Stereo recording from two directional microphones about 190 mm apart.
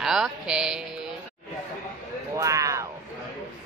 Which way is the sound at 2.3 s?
15° right (ahead or behind).